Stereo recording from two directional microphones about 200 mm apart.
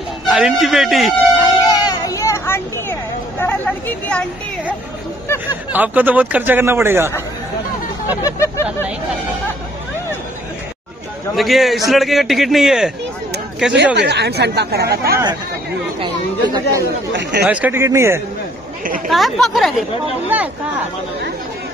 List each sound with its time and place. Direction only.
0.3 s a man's voice: centre (ahead or behind)
1.6 s a sound: 20° left (ahead or behind)
5.7 s speech: 10° right (ahead or behind)
8.2 s a sound: 15° left (ahead or behind)
11.3 s a man's voice: centre (ahead or behind)
13.9 s speech: 55° right (ahead or behind)
16.0 s speech: 20° right (ahead or behind)
17.2 s speech: 55° right (ahead or behind)
17.5 s speech: 10° right (ahead or behind)
19.0 s a man's voice: centre (ahead or behind)